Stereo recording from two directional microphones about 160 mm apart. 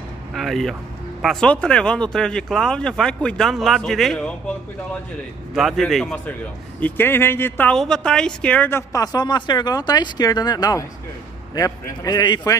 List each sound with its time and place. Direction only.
0.3 s a man's voice: centre (ahead or behind); by 12.5 s 25° left (ahead or behind)